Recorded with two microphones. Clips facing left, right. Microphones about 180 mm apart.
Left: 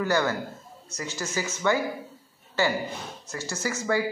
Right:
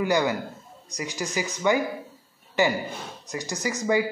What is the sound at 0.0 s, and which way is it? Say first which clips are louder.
Speech: right 2 dB; 15° right (ahead or behind).